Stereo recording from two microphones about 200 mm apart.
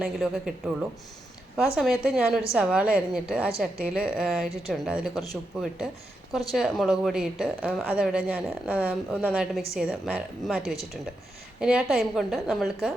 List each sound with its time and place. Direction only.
0.0 s a woman's voice: 5° right (ahead or behind)